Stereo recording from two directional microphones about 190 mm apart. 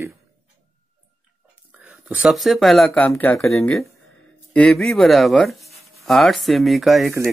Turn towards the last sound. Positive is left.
turn(degrees=0)  # may be behind; listen again after turning